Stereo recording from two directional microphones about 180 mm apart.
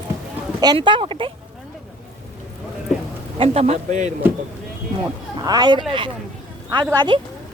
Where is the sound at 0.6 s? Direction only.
25° right (ahead or behind).